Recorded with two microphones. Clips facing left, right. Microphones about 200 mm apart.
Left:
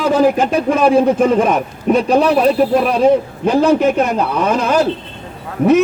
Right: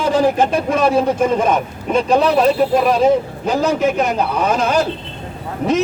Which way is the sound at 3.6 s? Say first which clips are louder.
Left 3 dB; 55° left (ahead or behind).